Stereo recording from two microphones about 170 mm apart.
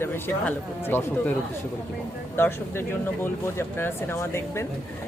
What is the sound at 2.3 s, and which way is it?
Speech, 15° left (ahead or behind).